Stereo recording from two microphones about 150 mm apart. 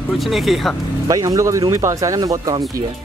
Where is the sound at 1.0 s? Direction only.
20° right (ahead or behind).